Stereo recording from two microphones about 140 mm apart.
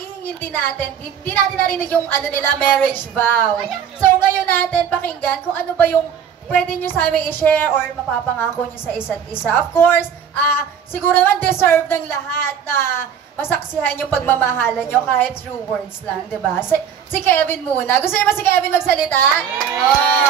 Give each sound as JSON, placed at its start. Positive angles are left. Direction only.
{"t": 0.4, "sound": "a woman's voice", "side_deg": 15}
{"t": 16.5, "sound": "a woman's voice", "side_deg": 15}